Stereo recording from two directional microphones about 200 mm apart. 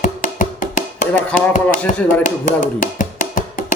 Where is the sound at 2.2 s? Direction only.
40° left (ahead or behind).